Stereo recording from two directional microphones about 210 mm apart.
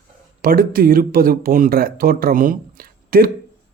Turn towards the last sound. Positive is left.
turn(degrees=-45)  # may be behind; listen again after turning